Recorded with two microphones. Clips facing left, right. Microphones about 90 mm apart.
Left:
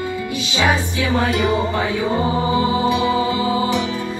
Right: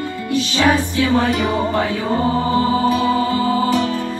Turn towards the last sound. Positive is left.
turn(degrees=15)  # may be behind; listen again after turning